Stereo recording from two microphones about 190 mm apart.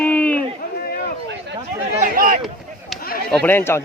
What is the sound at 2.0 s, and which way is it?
Speech, 50° right (ahead or behind).